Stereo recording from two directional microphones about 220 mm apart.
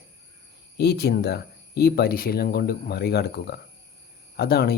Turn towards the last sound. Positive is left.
turn(degrees=45)  # may be behind; listen again after turning